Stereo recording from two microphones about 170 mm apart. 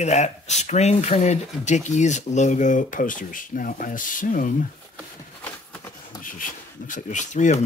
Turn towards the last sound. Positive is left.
turn(degrees=45)  # may be behind; listen again after turning